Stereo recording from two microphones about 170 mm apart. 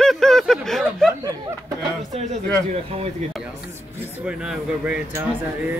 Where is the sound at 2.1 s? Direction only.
45° right (ahead or behind).